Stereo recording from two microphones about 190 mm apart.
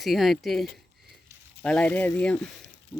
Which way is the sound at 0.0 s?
Centre (ahead or behind).